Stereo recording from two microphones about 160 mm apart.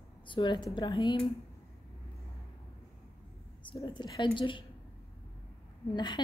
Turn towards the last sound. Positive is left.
turn(degrees=30)  # may be behind; listen again after turning